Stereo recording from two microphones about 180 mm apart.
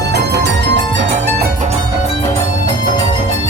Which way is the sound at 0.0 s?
65° right (ahead or behind).